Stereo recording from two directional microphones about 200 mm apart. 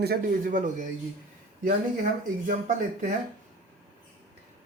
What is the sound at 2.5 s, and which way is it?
Speech, 40° right (ahead or behind).